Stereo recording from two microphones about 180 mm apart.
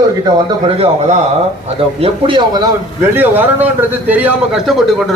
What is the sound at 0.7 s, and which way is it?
A man's voice, 30° right (ahead or behind).